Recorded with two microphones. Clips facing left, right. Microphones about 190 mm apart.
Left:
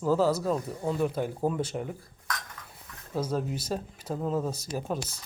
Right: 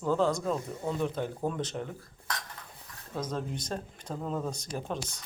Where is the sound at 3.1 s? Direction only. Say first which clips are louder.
Left 4 dB; 10° left (ahead or behind).